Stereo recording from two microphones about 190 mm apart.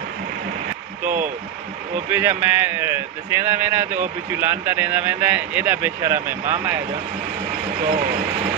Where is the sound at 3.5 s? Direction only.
10° right (ahead or behind).